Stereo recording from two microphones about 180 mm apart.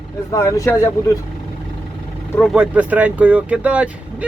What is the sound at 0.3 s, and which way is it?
Speech, 15° left (ahead or behind).